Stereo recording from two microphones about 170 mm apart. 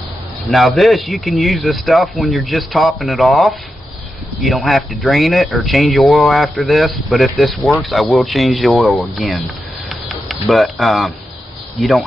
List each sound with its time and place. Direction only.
0.5 s speech: centre (ahead or behind)
9.8 s a sound: centre (ahead or behind)
11.7 s speech: centre (ahead or behind)